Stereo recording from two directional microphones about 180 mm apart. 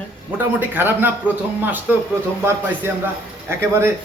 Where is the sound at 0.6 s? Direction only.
10° right (ahead or behind).